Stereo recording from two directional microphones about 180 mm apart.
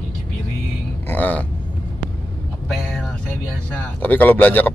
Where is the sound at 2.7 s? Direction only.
Centre (ahead or behind).